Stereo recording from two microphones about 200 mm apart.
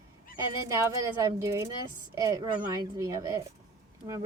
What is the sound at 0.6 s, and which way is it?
A woman's voice, 15° right (ahead or behind).